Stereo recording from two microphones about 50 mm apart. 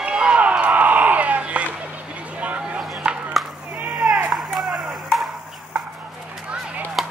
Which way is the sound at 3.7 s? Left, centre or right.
Right.